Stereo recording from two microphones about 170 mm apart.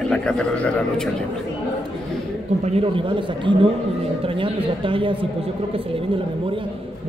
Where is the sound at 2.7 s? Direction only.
30° right (ahead or behind).